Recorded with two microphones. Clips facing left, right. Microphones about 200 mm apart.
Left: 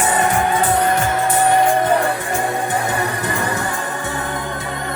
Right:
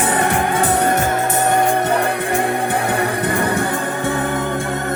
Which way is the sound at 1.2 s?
45° right (ahead or behind).